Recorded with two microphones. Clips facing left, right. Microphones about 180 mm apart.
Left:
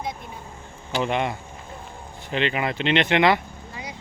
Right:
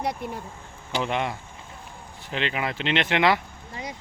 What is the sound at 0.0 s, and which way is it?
Speech, 65° right (ahead or behind).